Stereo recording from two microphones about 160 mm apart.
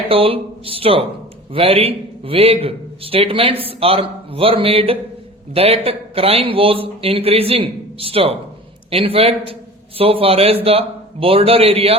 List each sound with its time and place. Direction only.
0.1 s a man's voice: 35° right (ahead or behind)